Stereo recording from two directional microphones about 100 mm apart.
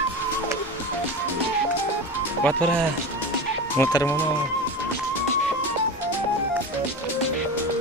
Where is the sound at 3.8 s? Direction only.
25° left (ahead or behind).